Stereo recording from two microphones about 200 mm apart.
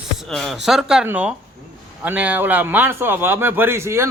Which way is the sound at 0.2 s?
Centre (ahead or behind).